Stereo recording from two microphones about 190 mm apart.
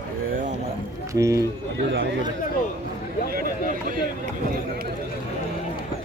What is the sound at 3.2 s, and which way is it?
Chatter, 50° right (ahead or behind).